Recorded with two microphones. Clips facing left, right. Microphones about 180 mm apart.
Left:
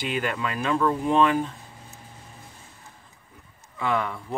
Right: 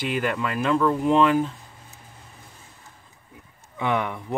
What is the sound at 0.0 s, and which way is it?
Speech, centre (ahead or behind).